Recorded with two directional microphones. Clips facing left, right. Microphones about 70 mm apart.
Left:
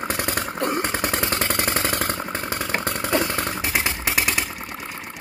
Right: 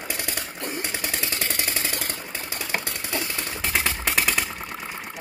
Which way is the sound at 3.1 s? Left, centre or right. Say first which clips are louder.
Left 8 dB; left.